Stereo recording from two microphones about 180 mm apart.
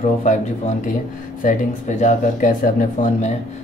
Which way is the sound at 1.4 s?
45° left (ahead or behind).